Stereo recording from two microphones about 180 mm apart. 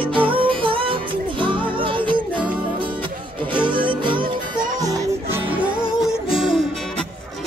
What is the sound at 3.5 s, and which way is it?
Music, 25° right (ahead or behind).